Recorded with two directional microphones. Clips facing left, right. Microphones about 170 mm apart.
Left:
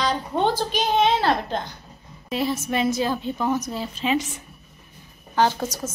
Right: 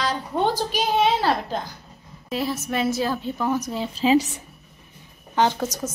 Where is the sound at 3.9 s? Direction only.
35° right (ahead or behind).